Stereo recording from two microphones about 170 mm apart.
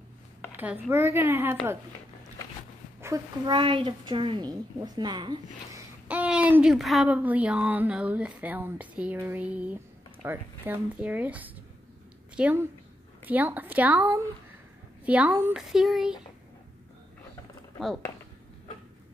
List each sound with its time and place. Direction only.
0.5 s speech: 10° right (ahead or behind)
3.0 s a child's voice: 20° right (ahead or behind)
3.5 s a woman's voice: 30° right (ahead or behind)
6.0 s speech: 10° right (ahead or behind)